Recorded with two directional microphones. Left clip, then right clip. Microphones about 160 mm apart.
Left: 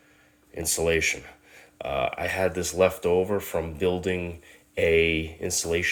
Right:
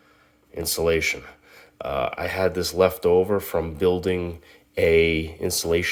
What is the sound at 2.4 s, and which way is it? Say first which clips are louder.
Speech: right 3 dB; 30° right (ahead or behind).